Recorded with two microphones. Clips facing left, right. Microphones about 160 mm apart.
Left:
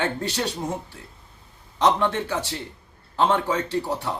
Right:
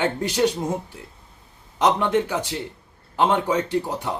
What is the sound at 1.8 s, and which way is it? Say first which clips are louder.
Speech: right 2 dB; 15° right (ahead or behind).